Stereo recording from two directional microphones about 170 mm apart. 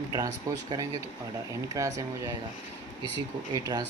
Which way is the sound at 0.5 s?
20° right (ahead or behind).